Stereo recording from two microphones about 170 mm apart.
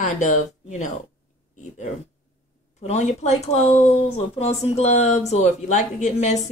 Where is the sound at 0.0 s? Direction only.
45° left (ahead or behind).